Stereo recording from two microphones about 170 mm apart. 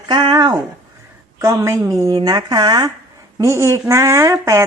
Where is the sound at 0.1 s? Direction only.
25° right (ahead or behind).